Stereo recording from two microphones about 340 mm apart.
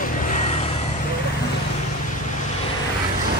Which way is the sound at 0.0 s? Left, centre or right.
Left.